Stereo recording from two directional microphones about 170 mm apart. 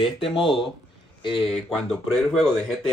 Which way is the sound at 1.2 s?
30° left (ahead or behind).